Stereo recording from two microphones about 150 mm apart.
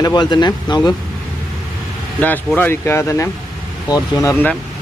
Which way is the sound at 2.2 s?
10° left (ahead or behind).